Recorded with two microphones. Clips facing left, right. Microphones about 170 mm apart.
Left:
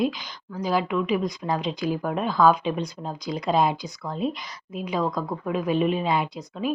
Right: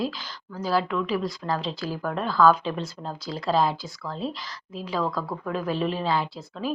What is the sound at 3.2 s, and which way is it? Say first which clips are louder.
Speech: left 1 dB; 15° left (ahead or behind).